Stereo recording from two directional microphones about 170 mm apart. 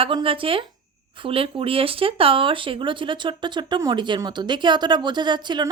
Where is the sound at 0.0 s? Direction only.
30° right (ahead or behind).